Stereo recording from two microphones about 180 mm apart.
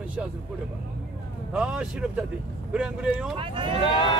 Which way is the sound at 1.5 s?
5° right (ahead or behind).